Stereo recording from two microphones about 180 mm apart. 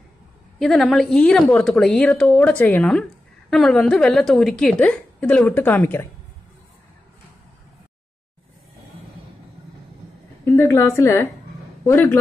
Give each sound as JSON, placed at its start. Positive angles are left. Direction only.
{"t": 0.6, "sound": "a woman's voice", "side_deg": 0}
{"t": 10.4, "sound": "a woman's voice", "side_deg": 15}